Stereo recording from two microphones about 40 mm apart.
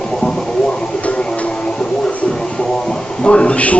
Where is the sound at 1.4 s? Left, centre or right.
Left.